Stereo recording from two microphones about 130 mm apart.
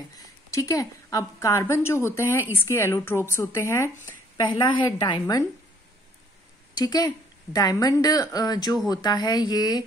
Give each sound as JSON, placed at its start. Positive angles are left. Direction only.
{"t": 0.5, "sound": "a woman's voice", "side_deg": 25}
{"t": 4.6, "sound": "speech", "side_deg": 35}
{"t": 5.2, "sound": "a woman's voice", "side_deg": 25}
{"t": 6.7, "sound": "a woman's voice", "side_deg": 30}